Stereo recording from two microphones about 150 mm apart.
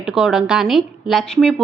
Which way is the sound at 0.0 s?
5° right (ahead or behind).